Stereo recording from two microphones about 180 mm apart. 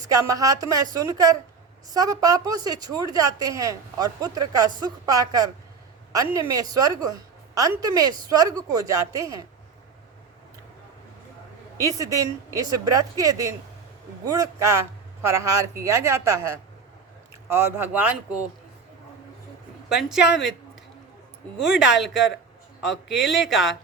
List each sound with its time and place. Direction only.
0.1 s a woman's voice: 20° right (ahead or behind)
11.8 s a woman's voice: 20° right (ahead or behind)
19.9 s speech: 5° right (ahead or behind)
21.6 s speech: centre (ahead or behind)